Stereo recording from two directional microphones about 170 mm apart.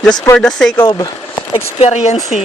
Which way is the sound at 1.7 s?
40° left (ahead or behind).